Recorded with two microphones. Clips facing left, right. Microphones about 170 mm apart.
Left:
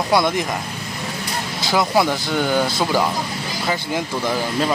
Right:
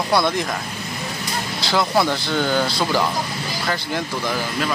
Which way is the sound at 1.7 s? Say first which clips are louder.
Left 1 dB; 10° left (ahead or behind).